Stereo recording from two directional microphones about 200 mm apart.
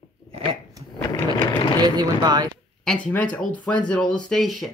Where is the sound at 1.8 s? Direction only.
20° right (ahead or behind).